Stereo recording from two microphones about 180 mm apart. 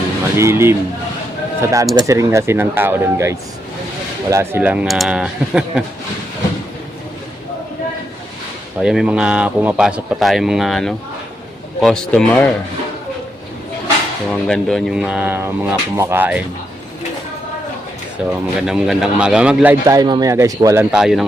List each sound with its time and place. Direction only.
0.3 s a man's voice: 15° right (ahead or behind)
8.8 s a man's voice: 5° right (ahead or behind)
14.3 s speech: centre (ahead or behind)
18.2 s a man's voice: 5° right (ahead or behind)
19.8 s speech: 20° right (ahead or behind)
20.9 s a man's voice: 5° right (ahead or behind)